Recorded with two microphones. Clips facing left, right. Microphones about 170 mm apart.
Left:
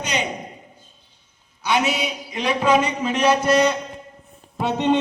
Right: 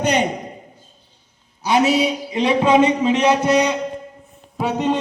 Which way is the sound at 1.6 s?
35° right (ahead or behind).